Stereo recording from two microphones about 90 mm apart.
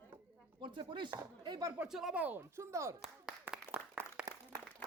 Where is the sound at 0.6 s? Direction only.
65° right (ahead or behind).